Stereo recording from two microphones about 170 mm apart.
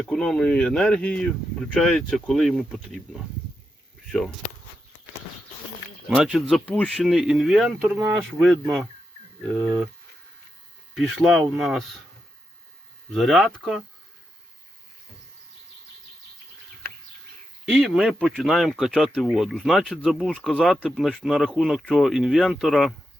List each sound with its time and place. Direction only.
0.0 s speech: 5° left (ahead or behind)
6.1 s speech: 5° right (ahead or behind)
6.5 s speech: 5° left (ahead or behind)
9.6 s speech: 15° right (ahead or behind)
10.9 s speech: centre (ahead or behind)
13.1 s speech: centre (ahead or behind)
17.7 s speech: centre (ahead or behind)